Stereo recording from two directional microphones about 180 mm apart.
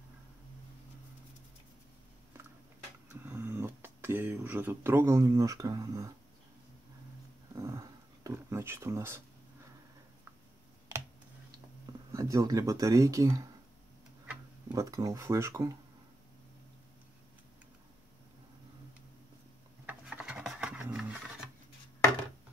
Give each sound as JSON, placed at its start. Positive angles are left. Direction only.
{"t": 3.1, "sound": "speech", "side_deg": -10}
{"t": 7.5, "sound": "a sound", "side_deg": -15}
{"t": 11.5, "sound": "speech", "side_deg": -20}
{"t": 14.7, "sound": "speech", "side_deg": -20}
{"t": 19.9, "sound": "rub", "side_deg": -5}